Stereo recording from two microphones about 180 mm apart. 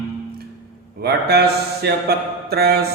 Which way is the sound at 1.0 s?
65° right (ahead or behind).